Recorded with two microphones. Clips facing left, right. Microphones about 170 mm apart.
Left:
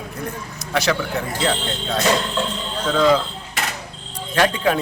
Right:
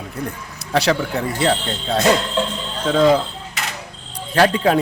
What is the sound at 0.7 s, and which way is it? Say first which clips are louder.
Speech: right 3 dB; 35° right (ahead or behind).